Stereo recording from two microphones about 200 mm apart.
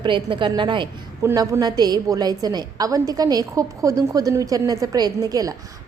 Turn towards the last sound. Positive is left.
turn(degrees=-20)  # may be behind; listen again after turning